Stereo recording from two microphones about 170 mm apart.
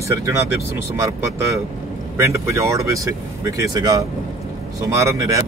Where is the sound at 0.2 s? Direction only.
15° right (ahead or behind).